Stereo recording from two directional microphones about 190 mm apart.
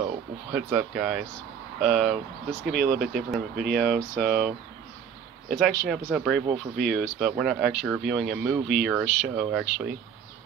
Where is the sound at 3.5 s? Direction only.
55° right (ahead or behind).